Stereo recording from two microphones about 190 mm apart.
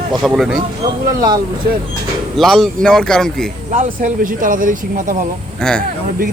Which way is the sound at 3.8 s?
45° right (ahead or behind).